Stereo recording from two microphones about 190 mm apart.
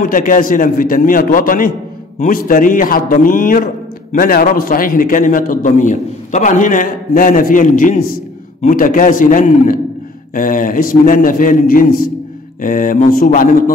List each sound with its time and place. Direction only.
0.0 s a man's voice: 45° left (ahead or behind)